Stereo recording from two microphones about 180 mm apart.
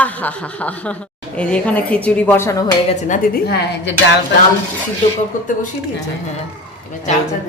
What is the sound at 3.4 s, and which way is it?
Speech, 70° left (ahead or behind).